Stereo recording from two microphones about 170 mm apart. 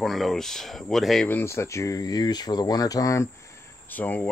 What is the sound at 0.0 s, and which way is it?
Speech, centre (ahead or behind).